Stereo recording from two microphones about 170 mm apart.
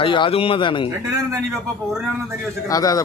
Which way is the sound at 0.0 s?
30° left (ahead or behind).